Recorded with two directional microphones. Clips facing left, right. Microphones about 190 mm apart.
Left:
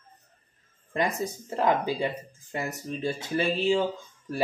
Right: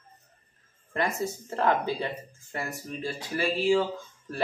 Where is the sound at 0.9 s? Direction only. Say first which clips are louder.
Left 1 dB; 15° left (ahead or behind).